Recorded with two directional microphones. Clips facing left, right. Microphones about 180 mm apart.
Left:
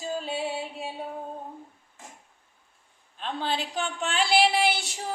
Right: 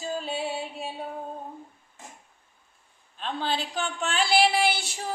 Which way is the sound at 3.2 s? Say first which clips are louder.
Even; 20° left (ahead or behind).